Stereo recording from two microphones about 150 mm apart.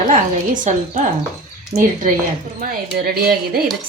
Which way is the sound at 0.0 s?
60° right (ahead or behind).